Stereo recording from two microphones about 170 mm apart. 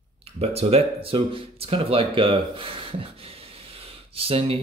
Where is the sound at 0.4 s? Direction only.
35° right (ahead or behind).